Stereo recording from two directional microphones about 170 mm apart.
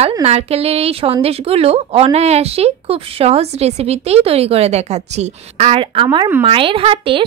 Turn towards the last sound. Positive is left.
turn(degrees=-30)  # may be behind; listen again after turning